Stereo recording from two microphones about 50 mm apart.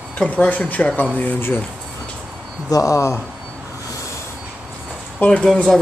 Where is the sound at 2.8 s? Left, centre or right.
Left.